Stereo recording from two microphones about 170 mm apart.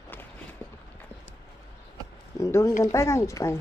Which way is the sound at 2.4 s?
15° left (ahead or behind).